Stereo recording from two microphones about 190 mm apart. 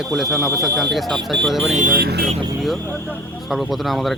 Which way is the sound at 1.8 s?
45° right (ahead or behind).